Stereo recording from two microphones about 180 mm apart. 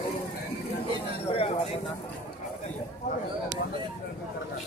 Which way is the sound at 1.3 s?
35° left (ahead or behind).